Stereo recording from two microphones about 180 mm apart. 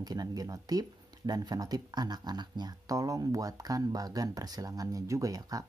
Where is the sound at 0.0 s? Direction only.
20° right (ahead or behind).